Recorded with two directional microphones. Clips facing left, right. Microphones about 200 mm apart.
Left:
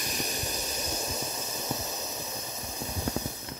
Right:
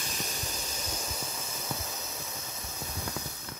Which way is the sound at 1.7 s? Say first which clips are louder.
Left 4 dB; 20° left (ahead or behind).